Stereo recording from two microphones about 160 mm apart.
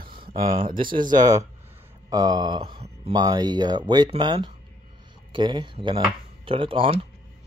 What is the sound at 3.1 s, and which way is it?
Speech, 25° right (ahead or behind).